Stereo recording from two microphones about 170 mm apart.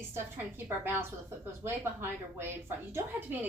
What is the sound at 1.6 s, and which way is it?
A woman's voice, 15° right (ahead or behind).